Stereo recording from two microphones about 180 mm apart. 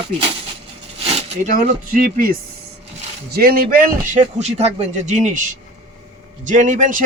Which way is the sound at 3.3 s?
55° right (ahead or behind).